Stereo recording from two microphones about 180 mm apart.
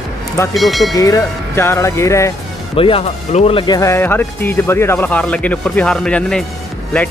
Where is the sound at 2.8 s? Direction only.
30° left (ahead or behind); by 6.4 s 5° left (ahead or behind).